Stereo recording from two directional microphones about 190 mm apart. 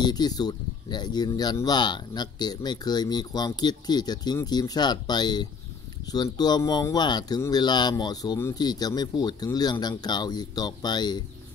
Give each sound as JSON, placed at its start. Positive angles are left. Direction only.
{"t": 0.0, "sound": "speech", "side_deg": 20}